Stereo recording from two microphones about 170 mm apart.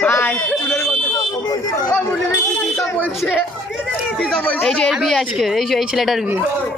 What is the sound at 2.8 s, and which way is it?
Speech, 10° left (ahead or behind).